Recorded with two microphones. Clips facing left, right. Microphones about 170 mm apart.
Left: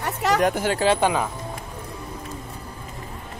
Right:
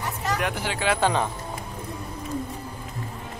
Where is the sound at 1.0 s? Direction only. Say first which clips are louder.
Left 1 dB; 10° left (ahead or behind).